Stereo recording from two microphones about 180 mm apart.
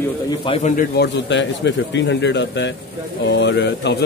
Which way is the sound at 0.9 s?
75° left (ahead or behind).